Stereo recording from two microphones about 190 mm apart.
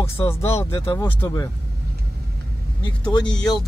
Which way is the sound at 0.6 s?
30° left (ahead or behind).